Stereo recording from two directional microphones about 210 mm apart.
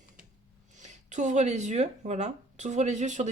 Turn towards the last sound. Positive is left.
turn(degrees=-35)  # may be behind; listen again after turning